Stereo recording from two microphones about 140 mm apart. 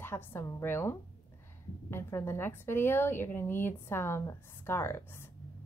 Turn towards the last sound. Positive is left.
turn(degrees=20)  # may be behind; listen again after turning